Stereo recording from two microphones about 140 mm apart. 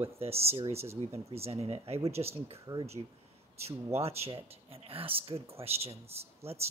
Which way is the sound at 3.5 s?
45° right (ahead or behind).